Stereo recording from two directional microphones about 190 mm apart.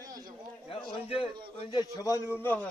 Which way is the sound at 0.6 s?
30° left (ahead or behind).